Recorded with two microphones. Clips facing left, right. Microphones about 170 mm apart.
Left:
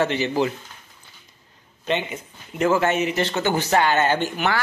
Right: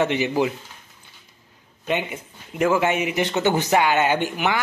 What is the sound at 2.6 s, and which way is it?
Speech, 10° right (ahead or behind).